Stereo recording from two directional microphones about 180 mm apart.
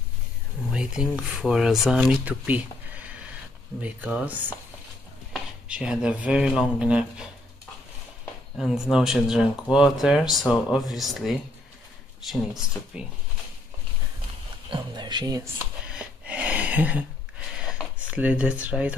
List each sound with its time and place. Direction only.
0.7 s speech: 5° right (ahead or behind)
8.5 s speech: centre (ahead or behind)
14.7 s speech: 25° right (ahead or behind)
15.9 s a sound: 5° right (ahead or behind)
17.7 s speech: 5° right (ahead or behind)